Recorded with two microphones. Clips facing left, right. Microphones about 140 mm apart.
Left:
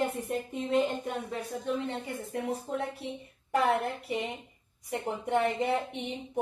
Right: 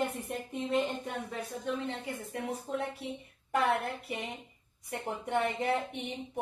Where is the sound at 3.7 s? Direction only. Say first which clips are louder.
Left 3 dB; centre (ahead or behind).